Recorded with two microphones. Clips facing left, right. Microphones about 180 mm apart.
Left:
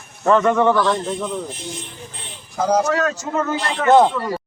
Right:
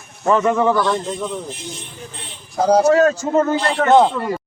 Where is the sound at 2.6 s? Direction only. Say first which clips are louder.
Right 5 dB; 35° right (ahead or behind).